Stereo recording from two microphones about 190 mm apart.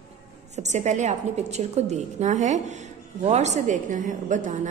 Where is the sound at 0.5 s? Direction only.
35° right (ahead or behind).